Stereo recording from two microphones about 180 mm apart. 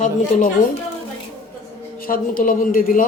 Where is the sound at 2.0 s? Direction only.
50° left (ahead or behind).